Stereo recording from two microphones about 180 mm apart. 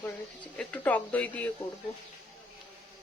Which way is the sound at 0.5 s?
10° left (ahead or behind).